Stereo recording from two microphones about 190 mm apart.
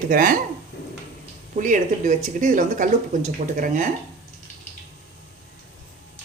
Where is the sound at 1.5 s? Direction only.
40° right (ahead or behind).